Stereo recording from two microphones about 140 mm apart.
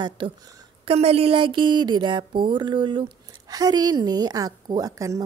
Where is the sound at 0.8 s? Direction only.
45° right (ahead or behind).